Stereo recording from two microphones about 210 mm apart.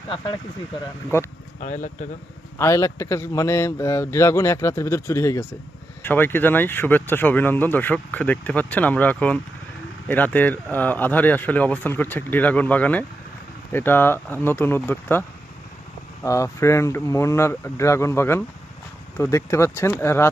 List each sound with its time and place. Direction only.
1.5 s speech: 35° left (ahead or behind)
2.6 s speech: 15° left (ahead or behind)
16.2 s speech: 15° left (ahead or behind)